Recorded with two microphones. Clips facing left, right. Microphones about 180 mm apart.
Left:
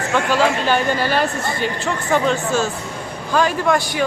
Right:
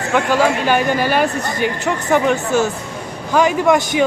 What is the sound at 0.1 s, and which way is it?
Speech, 15° right (ahead or behind).